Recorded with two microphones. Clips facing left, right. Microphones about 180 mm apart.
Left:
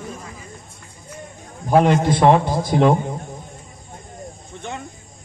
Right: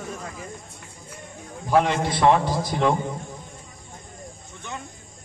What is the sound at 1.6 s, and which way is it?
A man's voice, 45° left (ahead or behind).